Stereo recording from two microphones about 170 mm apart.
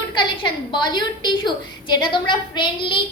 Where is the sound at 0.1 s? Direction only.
25° left (ahead or behind).